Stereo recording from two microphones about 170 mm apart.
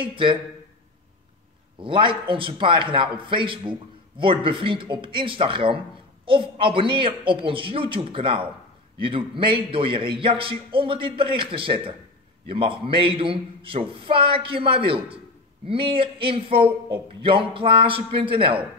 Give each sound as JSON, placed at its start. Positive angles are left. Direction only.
{"t": 0.0, "sound": "a man's voice", "side_deg": -30}
{"t": 1.8, "sound": "a man's voice", "side_deg": -30}